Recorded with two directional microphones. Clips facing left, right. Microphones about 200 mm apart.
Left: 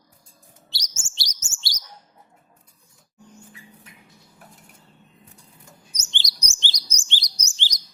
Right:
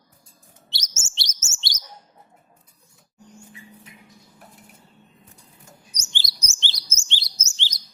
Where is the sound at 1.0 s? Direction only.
25° right (ahead or behind).